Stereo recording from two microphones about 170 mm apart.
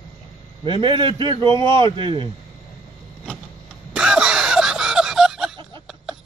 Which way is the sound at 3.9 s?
5° right (ahead or behind).